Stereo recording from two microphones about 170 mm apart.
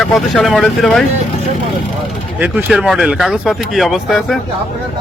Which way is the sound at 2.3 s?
10° right (ahead or behind).